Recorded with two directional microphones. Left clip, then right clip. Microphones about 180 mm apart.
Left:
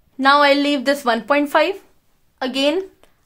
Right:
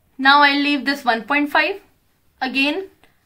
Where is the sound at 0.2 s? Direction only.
65° left (ahead or behind).